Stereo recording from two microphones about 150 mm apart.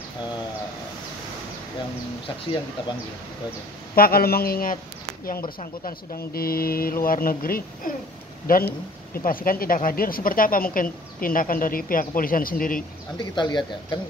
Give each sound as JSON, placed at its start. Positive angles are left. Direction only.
{"t": 3.9, "sound": "speech", "side_deg": 85}
{"t": 5.9, "sound": "speech", "side_deg": 90}
{"t": 13.2, "sound": "speech", "side_deg": 30}